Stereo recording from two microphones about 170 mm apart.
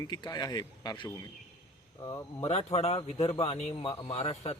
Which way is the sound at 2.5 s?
40° left (ahead or behind).